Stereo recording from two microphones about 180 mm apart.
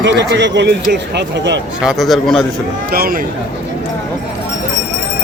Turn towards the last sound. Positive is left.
turn(degrees=-55)  # may be behind; listen again after turning